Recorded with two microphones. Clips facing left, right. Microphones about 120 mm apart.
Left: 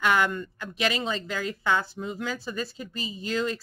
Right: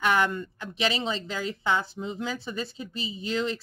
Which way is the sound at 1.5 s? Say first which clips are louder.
Left 1 dB; 25° right (ahead or behind).